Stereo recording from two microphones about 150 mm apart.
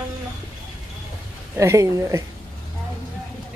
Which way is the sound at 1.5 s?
20° right (ahead or behind).